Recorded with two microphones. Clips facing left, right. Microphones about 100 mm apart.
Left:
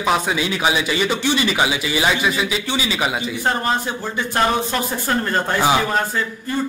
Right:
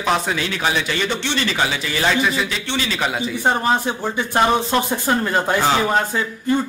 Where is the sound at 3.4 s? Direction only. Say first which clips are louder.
Right 3 dB; 15° right (ahead or behind).